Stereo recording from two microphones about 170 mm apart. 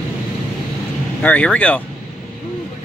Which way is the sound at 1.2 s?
5° left (ahead or behind).